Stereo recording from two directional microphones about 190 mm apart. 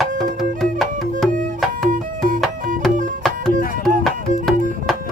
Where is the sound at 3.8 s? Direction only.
Centre (ahead or behind).